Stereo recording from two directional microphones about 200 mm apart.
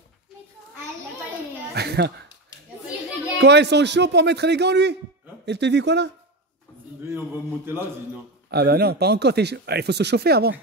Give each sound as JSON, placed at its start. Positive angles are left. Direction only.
{"t": 1.7, "sound": "a child's voice", "side_deg": -55}
{"t": 3.3, "sound": "speech", "side_deg": -55}
{"t": 7.0, "sound": "a man's voice", "side_deg": -10}
{"t": 8.5, "sound": "speech", "side_deg": -50}